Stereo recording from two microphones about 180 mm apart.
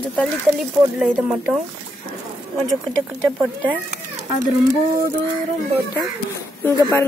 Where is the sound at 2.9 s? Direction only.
5° left (ahead or behind).